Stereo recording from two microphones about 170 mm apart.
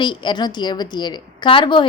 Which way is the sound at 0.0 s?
25° left (ahead or behind).